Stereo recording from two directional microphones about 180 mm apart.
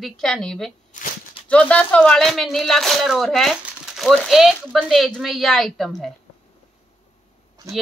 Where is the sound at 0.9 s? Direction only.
45° left (ahead or behind).